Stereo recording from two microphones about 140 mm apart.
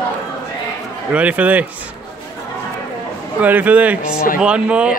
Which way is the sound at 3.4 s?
10° right (ahead or behind).